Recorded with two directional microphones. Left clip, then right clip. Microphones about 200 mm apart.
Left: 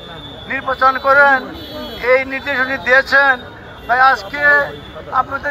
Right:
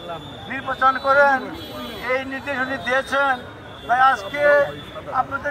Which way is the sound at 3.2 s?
30° left (ahead or behind).